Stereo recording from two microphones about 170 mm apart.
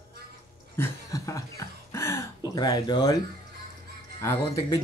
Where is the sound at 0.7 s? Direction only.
20° left (ahead or behind).